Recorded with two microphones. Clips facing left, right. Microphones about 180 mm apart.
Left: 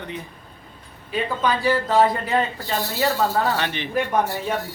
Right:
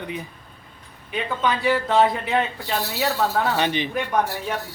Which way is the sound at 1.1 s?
Centre (ahead or behind).